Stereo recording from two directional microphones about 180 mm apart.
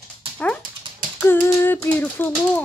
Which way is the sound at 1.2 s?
10° left (ahead or behind).